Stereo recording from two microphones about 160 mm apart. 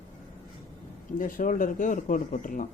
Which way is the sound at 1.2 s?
60° left (ahead or behind).